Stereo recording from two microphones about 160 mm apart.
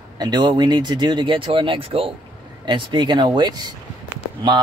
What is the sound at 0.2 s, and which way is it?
Speech, 25° right (ahead or behind).